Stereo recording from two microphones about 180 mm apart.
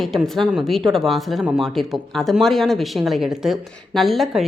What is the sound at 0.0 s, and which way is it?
Speech, centre (ahead or behind).